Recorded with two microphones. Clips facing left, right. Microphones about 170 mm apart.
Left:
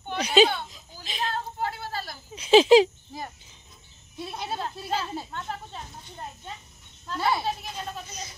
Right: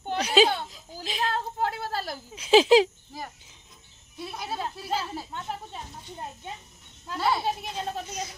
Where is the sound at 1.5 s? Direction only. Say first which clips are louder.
Right 2 dB; 40° right (ahead or behind).